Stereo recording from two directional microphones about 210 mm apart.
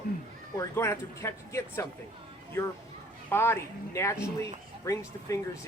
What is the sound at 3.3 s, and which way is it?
Speech, 10° left (ahead or behind).